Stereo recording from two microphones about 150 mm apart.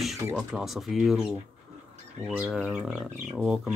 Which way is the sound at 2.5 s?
Centre (ahead or behind).